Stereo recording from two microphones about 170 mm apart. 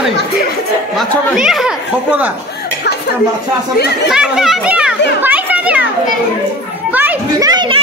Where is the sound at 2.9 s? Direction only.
85° left.